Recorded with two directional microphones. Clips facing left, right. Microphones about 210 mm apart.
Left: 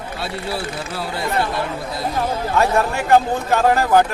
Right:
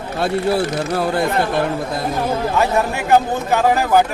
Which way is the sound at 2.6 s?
5° right (ahead or behind).